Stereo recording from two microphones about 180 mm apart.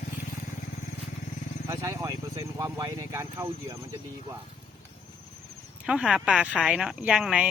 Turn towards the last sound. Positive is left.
turn(degrees=-5)  # may be behind; listen again after turning